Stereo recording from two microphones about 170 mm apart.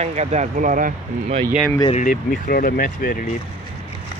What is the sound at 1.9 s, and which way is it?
Speech, 55° left (ahead or behind).